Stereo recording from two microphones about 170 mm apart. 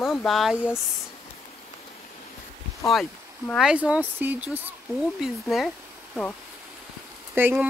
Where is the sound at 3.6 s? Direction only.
5° right (ahead or behind).